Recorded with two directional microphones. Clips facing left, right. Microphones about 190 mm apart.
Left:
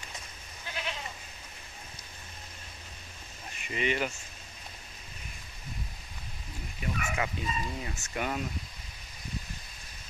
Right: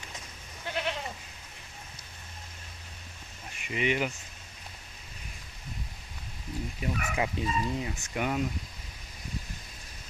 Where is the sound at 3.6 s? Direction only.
10° right (ahead or behind).